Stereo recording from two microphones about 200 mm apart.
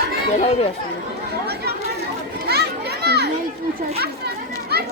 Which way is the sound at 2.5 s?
55° right (ahead or behind).